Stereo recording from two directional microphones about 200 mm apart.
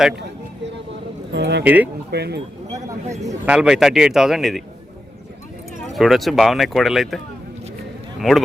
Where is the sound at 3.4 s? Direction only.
5° right (ahead or behind).